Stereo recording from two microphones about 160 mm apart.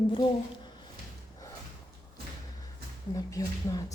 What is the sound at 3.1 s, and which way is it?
Speech, 20° left (ahead or behind).